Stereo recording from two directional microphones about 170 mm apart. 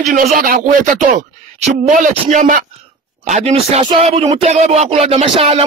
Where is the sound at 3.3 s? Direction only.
40° right (ahead or behind).